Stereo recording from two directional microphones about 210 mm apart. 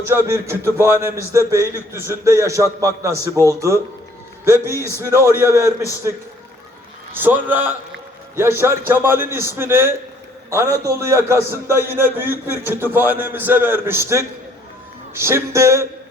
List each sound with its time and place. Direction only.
0.1 s a man's voice: 10° right (ahead or behind)
4.8 s a man's voice: 15° right (ahead or behind)
7.2 s a man's voice: 10° right (ahead or behind)